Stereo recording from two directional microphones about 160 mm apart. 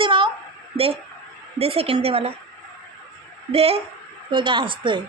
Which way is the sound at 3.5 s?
40° right (ahead or behind).